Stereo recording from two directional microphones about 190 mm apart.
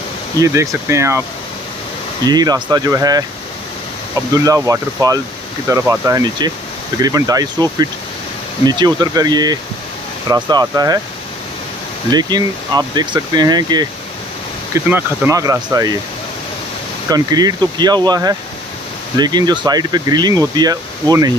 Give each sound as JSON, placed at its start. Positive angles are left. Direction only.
{"t": 0.4, "sound": "speech", "side_deg": -15}
{"t": 2.2, "sound": "speech", "side_deg": -20}
{"t": 4.5, "sound": "speech", "side_deg": -15}
{"t": 8.6, "sound": "speech", "side_deg": -20}
{"t": 12.1, "sound": "speech", "side_deg": -20}
{"t": 17.1, "sound": "speech", "side_deg": -20}